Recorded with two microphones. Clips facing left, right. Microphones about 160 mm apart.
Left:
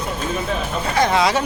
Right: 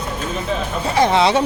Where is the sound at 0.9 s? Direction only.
25° right (ahead or behind).